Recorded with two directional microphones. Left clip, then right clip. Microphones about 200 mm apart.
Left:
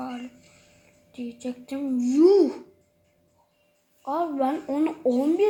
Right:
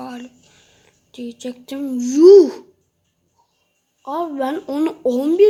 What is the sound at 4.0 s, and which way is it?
Speech, 50° right (ahead or behind).